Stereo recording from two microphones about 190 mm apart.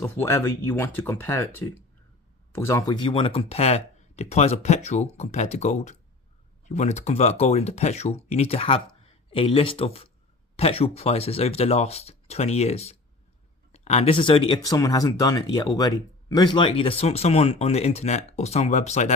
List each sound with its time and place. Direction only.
0.0 s speech: 10° left (ahead or behind); by 19.1 s 40° left (ahead or behind)